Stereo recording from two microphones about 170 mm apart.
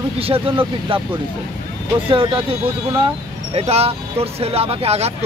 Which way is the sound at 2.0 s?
30° right (ahead or behind).